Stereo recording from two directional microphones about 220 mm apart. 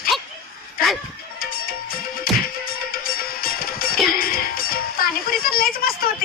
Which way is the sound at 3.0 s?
40° left (ahead or behind).